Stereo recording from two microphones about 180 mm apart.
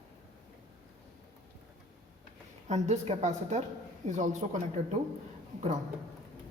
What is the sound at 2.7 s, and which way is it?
A woman's voice, 40° right (ahead or behind).